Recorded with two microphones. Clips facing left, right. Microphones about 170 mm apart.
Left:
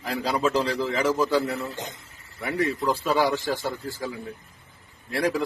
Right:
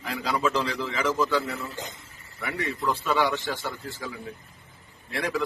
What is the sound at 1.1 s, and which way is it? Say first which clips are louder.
Speech: left 1 dB; 10° left (ahead or behind).